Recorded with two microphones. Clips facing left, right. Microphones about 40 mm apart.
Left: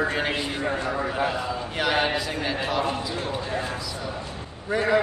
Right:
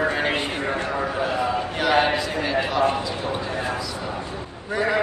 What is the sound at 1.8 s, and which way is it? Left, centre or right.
Speech, centre.